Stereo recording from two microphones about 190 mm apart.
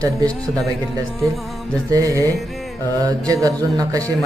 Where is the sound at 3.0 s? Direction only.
20° right (ahead or behind).